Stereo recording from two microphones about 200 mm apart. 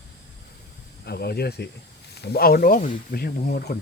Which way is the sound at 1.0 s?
50° left (ahead or behind).